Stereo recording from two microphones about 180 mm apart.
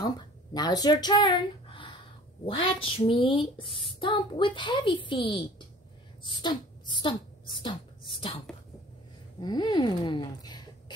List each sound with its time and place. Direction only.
0.0 s speech: 20° left (ahead or behind)
9.4 s speech: 25° left (ahead or behind)